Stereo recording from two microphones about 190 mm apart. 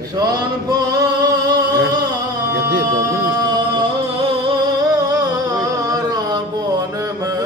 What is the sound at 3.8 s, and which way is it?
Music, 25° right (ahead or behind).